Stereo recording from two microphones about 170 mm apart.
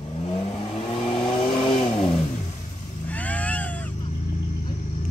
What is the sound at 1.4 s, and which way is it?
Vehicle, 30° left (ahead or behind).